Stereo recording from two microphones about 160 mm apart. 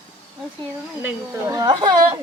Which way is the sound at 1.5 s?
25° right (ahead or behind).